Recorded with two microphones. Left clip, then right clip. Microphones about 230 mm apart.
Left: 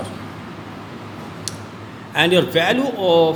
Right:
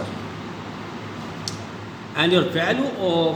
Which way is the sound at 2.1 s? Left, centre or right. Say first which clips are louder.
Left 4 dB; left.